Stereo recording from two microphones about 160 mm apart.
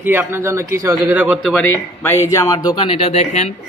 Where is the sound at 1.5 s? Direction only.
15° left (ahead or behind).